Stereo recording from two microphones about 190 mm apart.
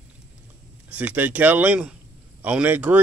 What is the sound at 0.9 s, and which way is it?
Speech, 10° right (ahead or behind).